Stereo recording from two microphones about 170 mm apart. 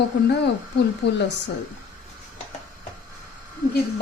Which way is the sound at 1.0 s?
90° left.